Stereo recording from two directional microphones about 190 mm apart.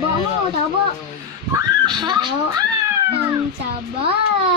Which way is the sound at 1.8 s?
25° right (ahead or behind).